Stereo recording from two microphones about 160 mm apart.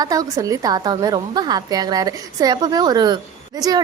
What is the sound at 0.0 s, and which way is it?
A woman's voice, 25° right (ahead or behind).